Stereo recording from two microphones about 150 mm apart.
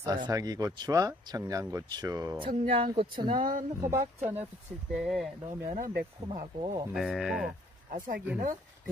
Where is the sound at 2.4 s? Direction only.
35° right (ahead or behind).